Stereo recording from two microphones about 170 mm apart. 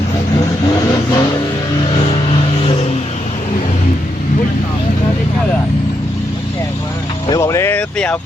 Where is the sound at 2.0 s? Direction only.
35° left (ahead or behind).